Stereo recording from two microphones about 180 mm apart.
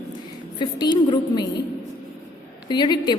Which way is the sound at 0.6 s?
25° left (ahead or behind).